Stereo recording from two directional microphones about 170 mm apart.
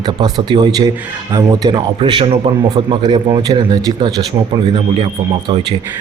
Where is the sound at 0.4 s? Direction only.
25° right (ahead or behind).